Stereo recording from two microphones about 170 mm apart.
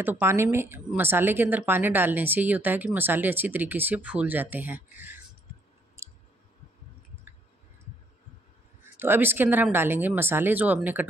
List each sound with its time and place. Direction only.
0.0 s speech: 10° right (ahead or behind)
6.0 s clicking: 15° right (ahead or behind)
8.8 s speech: 10° right (ahead or behind)